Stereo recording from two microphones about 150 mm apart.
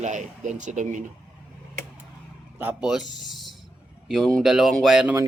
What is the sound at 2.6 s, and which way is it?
Speech, 10° right (ahead or behind).